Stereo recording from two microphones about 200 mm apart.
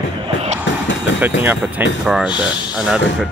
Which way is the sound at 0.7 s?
70° left (ahead or behind).